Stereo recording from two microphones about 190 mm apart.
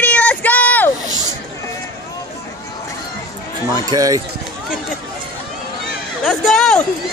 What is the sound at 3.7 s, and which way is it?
Speech, 20° right (ahead or behind).